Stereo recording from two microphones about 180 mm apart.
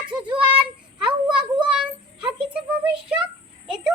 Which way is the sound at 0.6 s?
25° right (ahead or behind).